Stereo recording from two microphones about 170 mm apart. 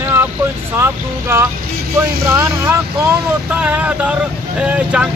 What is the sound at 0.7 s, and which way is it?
Speech, 15° right (ahead or behind).